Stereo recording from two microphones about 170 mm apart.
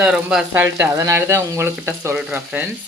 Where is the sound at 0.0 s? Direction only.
5° right (ahead or behind).